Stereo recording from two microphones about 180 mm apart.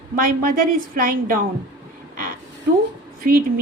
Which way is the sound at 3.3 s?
50° right (ahead or behind).